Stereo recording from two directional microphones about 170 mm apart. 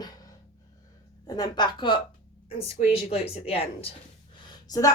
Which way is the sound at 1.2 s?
20° left (ahead or behind).